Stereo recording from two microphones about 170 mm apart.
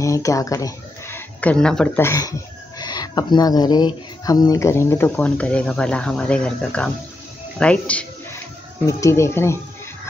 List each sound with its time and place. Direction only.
0.0 s speech: 20° left (ahead or behind)
2.0 s speech: 20° left (ahead or behind)